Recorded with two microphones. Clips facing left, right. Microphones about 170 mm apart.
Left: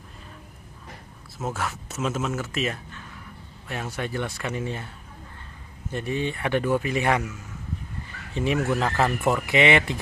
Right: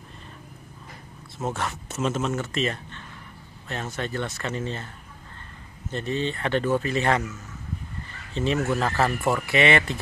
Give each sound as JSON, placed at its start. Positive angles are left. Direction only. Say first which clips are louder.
{"t": 1.4, "sound": "speech", "louder": "right 1 dB", "side_deg": 0}